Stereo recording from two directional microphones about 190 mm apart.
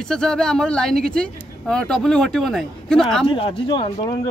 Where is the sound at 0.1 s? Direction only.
5° left (ahead or behind).